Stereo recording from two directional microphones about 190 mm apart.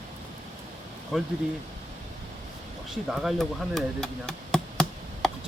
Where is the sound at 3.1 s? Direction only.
Centre (ahead or behind).